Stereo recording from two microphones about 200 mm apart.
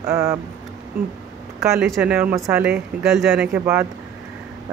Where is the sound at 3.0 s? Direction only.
Centre (ahead or behind).